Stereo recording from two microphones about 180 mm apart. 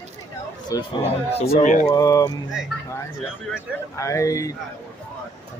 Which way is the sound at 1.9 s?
20° left (ahead or behind).